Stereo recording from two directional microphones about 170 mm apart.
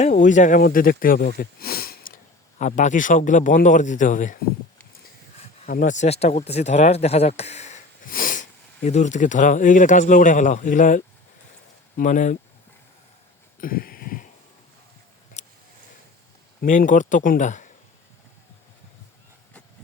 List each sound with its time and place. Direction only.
0.0 s speech: 50° left (ahead or behind); by 2.1 s 65° left (ahead or behind)
2.6 s speech: 45° left (ahead or behind)
5.6 s speech: 50° left (ahead or behind)
13.6 s a sound: 60° left (ahead or behind)
15.4 s a sound: 40° left (ahead or behind)
16.6 s speech: 50° left (ahead or behind)